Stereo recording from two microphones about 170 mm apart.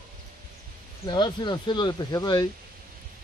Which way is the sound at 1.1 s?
25° left (ahead or behind).